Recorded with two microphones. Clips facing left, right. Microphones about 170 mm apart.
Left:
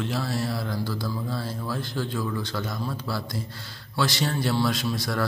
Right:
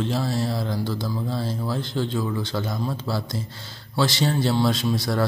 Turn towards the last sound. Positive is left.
turn(degrees=-20)  # may be behind; listen again after turning